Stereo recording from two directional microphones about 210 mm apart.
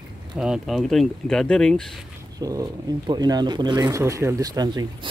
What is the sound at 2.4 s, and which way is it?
Speech, 15° right (ahead or behind).